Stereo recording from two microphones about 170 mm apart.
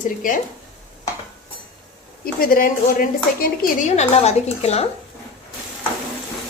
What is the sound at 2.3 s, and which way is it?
A woman's voice, 60° left (ahead or behind).